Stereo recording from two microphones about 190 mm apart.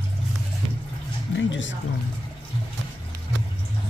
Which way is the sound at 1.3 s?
75° left (ahead or behind).